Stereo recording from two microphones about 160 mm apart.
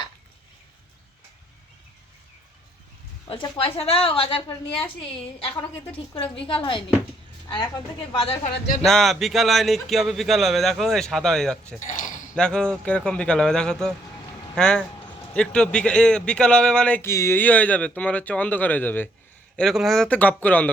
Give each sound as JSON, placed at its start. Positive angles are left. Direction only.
{"t": 3.6, "sound": "a woman's voice", "side_deg": 35}
{"t": 8.8, "sound": "speech", "side_deg": 0}
{"t": 11.8, "sound": "a sound", "side_deg": 55}
{"t": 12.4, "sound": "a man's voice", "side_deg": 5}